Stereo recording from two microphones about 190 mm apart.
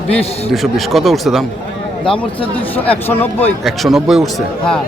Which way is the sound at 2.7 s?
10° left (ahead or behind).